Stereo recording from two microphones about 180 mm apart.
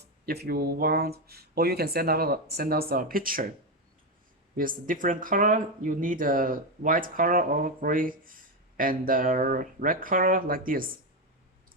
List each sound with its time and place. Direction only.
0.3 s speech: 60° right (ahead or behind)
4.5 s speech: 50° right (ahead or behind)